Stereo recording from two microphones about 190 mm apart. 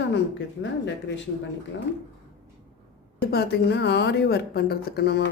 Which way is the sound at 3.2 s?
60° left (ahead or behind).